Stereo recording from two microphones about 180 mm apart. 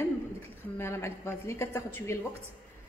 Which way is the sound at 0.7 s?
15° left (ahead or behind).